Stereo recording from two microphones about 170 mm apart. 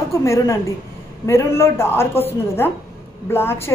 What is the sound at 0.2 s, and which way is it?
A woman's voice, 15° left (ahead or behind).